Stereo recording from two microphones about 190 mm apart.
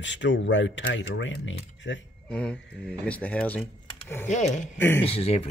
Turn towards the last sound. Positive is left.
turn(degrees=30)  # may be behind; listen again after turning